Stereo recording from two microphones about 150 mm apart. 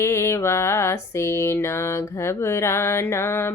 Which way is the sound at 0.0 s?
20° left (ahead or behind).